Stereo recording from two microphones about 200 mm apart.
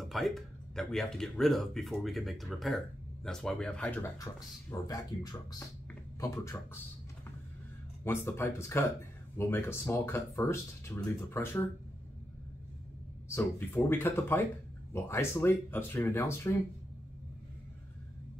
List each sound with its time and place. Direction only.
0.0 s speech: centre (ahead or behind)
8.0 s speech: 10° left (ahead or behind)
13.3 s speech: 10° left (ahead or behind)